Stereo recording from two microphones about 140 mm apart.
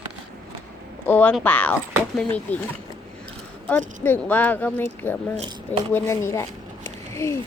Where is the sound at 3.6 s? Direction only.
10° left (ahead or behind).